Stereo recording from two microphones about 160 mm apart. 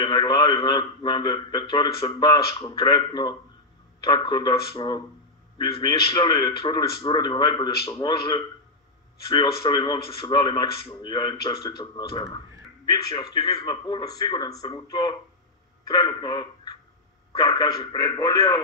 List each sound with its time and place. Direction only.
0.0 s a man's voice: 25° left (ahead or behind)